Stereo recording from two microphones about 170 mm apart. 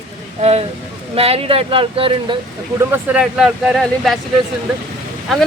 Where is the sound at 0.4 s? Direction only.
40° right (ahead or behind).